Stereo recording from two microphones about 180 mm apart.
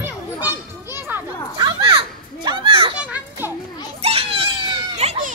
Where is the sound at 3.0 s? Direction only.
10° right (ahead or behind).